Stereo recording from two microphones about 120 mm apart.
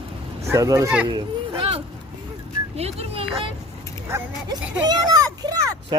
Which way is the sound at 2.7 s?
60° right (ahead or behind).